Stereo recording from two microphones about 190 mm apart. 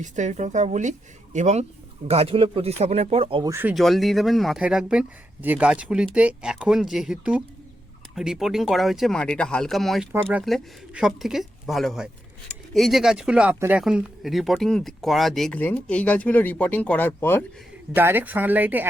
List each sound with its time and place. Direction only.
0.0 s speech: 40° right (ahead or behind)
3.5 s a woman's voice: 10° right (ahead or behind)
3.8 s speech: centre (ahead or behind)
17.9 s a woman's voice: 10° right (ahead or behind)